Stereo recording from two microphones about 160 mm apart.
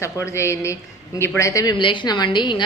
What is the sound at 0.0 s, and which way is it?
A woman's voice, 15° left (ahead or behind).